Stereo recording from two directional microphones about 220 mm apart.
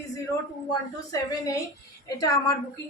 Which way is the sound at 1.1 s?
15° left (ahead or behind).